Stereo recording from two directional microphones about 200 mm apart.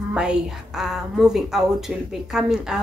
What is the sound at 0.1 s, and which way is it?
A woman's voice, 5° right (ahead or behind).